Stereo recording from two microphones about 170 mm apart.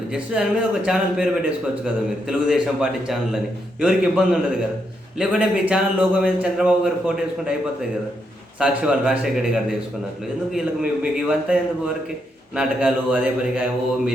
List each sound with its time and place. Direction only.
0.1 s a man's voice: 5° right (ahead or behind)
8.5 s a man's voice: 5° right (ahead or behind)